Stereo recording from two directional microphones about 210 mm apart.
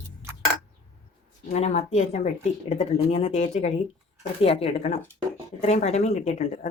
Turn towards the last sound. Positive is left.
turn(degrees=30)  # may be behind; listen again after turning